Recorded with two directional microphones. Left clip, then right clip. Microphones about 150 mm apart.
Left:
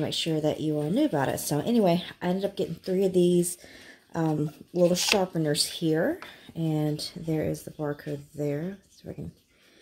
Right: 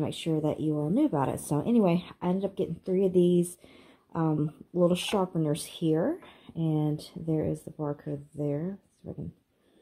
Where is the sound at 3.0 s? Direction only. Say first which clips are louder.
Left 1 dB; 10° right (ahead or behind).